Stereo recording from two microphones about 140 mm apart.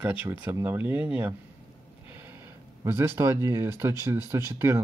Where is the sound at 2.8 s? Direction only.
20° right (ahead or behind).